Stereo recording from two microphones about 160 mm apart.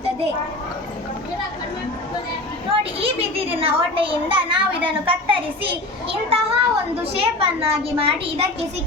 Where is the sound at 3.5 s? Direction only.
35° right (ahead or behind).